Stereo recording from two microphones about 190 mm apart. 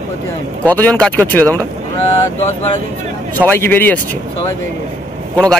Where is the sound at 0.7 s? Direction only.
10° left (ahead or behind).